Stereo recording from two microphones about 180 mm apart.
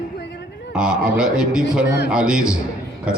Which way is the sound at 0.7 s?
5° right (ahead or behind).